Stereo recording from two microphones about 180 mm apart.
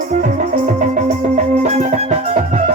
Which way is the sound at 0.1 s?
45° right (ahead or behind).